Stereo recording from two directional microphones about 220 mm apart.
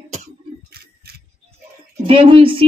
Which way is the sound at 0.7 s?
45° right (ahead or behind).